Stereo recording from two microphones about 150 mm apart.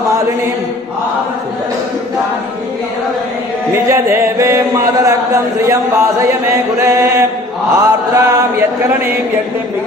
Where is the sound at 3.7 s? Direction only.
20° right (ahead or behind).